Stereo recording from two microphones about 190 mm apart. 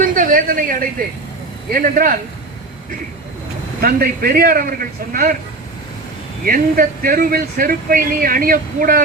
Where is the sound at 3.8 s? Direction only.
50° right (ahead or behind).